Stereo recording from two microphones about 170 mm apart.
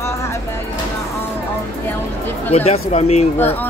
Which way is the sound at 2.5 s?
40° left (ahead or behind).